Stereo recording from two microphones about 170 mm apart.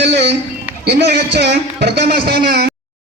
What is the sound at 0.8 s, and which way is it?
A man's voice, 80° right.